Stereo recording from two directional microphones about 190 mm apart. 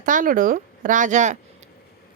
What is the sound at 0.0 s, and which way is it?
Speech, 45° right (ahead or behind).